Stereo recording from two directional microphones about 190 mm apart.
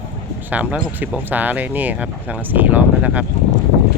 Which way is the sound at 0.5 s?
5° right (ahead or behind).